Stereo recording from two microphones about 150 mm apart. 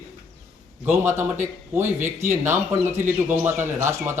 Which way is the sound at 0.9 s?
15° right (ahead or behind).